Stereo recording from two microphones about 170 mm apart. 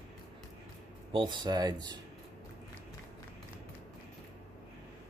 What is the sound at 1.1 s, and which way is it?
Speech, 25° right (ahead or behind).